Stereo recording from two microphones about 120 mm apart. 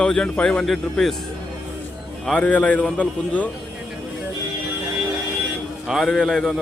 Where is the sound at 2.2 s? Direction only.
10° left (ahead or behind).